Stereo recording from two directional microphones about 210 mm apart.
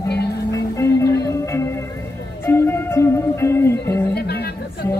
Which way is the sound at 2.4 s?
10° left (ahead or behind).